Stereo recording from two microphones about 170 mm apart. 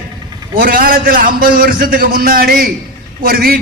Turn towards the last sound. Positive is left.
turn(degrees=-60)  # may be behind; listen again after turning